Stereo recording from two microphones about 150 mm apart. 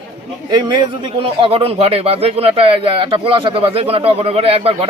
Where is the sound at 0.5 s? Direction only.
30° right (ahead or behind).